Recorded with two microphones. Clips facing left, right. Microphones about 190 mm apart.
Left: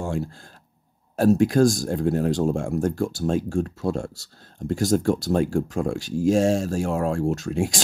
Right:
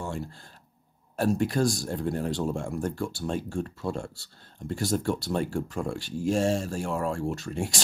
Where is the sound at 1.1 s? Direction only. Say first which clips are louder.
Left 7 dB; 40° left (ahead or behind).